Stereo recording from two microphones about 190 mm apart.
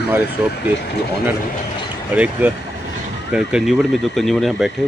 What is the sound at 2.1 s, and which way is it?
Speech, 10° right (ahead or behind).